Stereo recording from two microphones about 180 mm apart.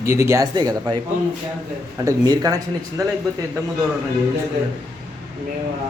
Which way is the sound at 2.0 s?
20° right (ahead or behind).